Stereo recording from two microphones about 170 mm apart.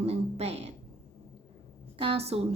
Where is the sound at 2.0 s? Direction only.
35° right (ahead or behind).